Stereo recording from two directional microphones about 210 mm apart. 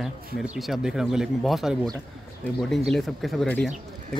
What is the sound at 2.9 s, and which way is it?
Speech, centre (ahead or behind).